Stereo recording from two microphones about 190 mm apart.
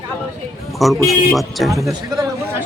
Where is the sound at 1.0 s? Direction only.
Centre (ahead or behind).